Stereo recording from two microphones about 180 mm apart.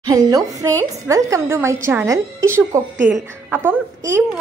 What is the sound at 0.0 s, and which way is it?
A woman's voice, 20° right (ahead or behind).